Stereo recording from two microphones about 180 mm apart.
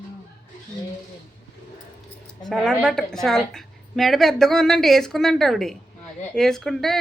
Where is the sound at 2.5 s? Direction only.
Centre (ahead or behind).